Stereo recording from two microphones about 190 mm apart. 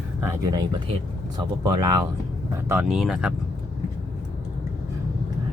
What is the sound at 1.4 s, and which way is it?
Speech, 20° right (ahead or behind).